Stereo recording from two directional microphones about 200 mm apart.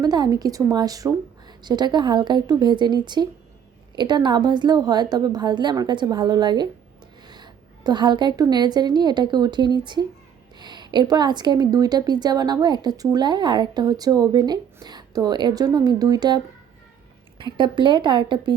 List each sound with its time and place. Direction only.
0.0 s a woman's voice: 20° right (ahead or behind)